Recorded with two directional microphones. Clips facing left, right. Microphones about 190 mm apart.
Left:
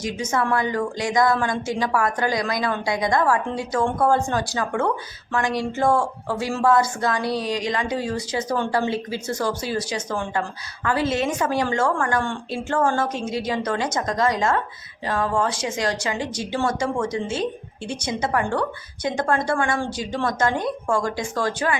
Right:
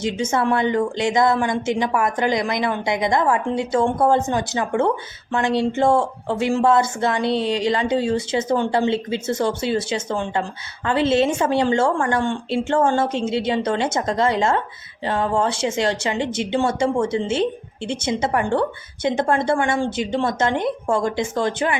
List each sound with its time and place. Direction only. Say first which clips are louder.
0.0 s speech: right 3 dB; 25° right (ahead or behind)